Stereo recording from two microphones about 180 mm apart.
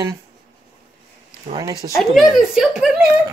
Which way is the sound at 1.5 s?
20° right (ahead or behind).